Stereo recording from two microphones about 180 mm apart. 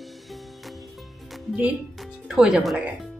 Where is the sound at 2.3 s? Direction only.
5° right (ahead or behind).